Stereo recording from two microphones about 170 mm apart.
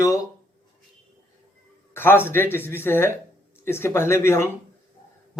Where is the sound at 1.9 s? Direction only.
15° left (ahead or behind).